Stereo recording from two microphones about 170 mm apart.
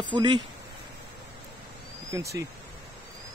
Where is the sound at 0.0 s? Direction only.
25° right (ahead or behind).